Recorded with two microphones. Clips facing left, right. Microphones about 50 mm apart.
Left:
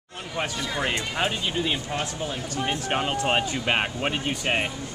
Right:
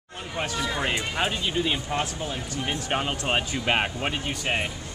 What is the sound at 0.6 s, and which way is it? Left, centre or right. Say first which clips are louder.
Speech: right 2 dB; centre.